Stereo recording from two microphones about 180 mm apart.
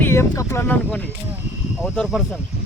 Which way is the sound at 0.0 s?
15° left (ahead or behind).